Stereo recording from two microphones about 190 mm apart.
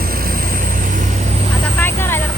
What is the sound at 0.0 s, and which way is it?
Vehicle, 50° right (ahead or behind).